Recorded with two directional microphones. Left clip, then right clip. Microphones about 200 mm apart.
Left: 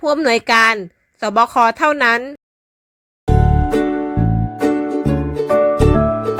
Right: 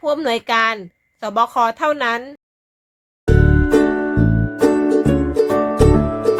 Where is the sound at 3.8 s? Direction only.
Centre (ahead or behind).